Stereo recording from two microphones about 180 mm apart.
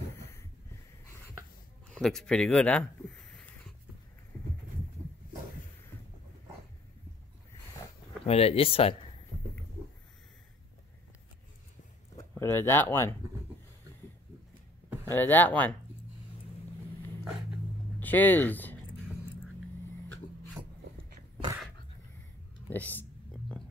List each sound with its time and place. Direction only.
2.0 s speech: centre (ahead or behind)
8.3 s speech: 35° left (ahead or behind)
12.2 s speech: 15° left (ahead or behind)
15.0 s speech: 10° left (ahead or behind)
18.0 s speech: 10° left (ahead or behind)
22.7 s speech: 10° left (ahead or behind)